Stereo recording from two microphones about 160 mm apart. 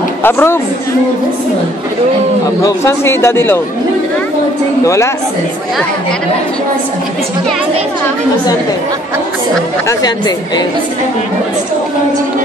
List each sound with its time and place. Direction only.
0.2 s a man's voice: 15° left (ahead or behind)
2.6 s a man's voice: 20° left (ahead or behind)
4.8 s a man's voice: 20° left (ahead or behind)
9.8 s speech: 25° left (ahead or behind)